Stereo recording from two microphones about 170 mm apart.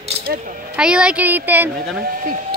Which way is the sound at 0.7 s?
5° right (ahead or behind).